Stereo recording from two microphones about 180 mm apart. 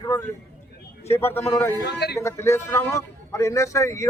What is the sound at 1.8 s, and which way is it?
Speech, 70° left (ahead or behind).